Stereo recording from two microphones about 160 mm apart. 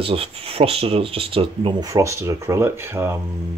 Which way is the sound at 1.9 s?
20° right (ahead or behind).